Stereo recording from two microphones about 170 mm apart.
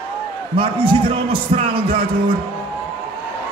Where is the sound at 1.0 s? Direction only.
30° right (ahead or behind).